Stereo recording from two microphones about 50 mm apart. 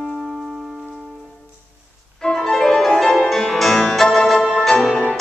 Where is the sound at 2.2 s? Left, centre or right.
Centre.